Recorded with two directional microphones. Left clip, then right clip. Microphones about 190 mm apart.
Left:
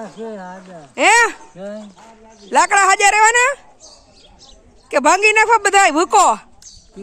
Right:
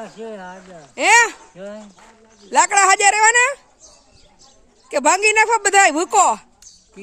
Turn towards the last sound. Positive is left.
turn(degrees=-10)  # may be behind; listen again after turning